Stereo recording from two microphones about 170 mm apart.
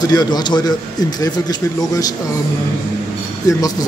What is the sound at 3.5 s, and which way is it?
Speech, 20° left (ahead or behind).